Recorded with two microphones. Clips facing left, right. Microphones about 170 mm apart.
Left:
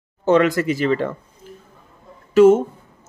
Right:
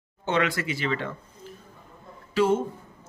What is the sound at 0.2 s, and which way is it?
Speech, 45° left (ahead or behind).